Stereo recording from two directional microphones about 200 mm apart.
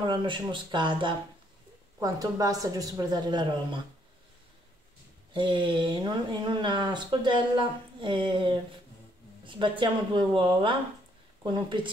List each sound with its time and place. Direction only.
0.0 s speech: 25° right (ahead or behind)
5.3 s speech: 25° right (ahead or behind)